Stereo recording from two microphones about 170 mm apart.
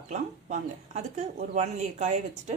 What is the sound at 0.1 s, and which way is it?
Speech, 45° right (ahead or behind).